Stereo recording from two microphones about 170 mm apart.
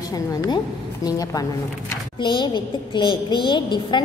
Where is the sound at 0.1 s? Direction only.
20° left (ahead or behind).